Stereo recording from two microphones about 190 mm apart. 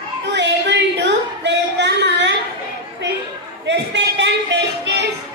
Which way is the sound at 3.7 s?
65° right (ahead or behind).